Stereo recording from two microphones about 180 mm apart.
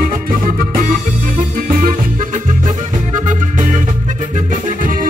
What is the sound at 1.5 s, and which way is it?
Music, 50° right (ahead or behind).